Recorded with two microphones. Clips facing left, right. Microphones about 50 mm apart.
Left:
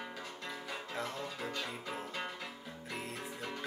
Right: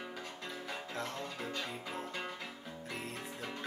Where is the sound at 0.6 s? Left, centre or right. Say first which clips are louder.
Even; centre.